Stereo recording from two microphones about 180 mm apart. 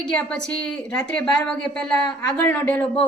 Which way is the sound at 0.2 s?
5° left (ahead or behind).